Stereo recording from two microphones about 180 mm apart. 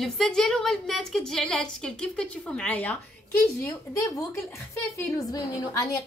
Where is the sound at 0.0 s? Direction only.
5° left (ahead or behind).